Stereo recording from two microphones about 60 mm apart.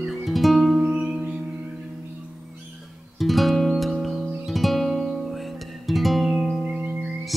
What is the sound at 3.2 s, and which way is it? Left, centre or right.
Music, centre.